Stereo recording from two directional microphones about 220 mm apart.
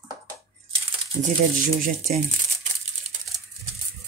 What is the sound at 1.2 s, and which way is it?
Speech, 40° right (ahead or behind).